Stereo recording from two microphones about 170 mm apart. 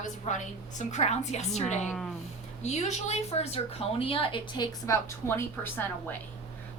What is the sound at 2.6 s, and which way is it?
A woman's voice, 40° left (ahead or behind).